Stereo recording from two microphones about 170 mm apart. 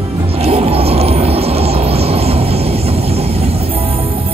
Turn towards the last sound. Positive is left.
turn(degrees=-35)  # may be behind; listen again after turning